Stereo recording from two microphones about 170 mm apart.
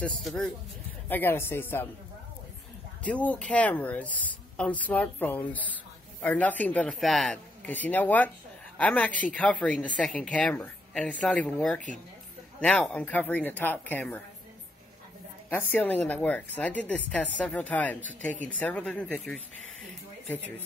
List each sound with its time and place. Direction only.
0.0 s speech: 5° left (ahead or behind)
3.0 s speech: 10° left (ahead or behind)
15.5 s speech: 10° left (ahead or behind)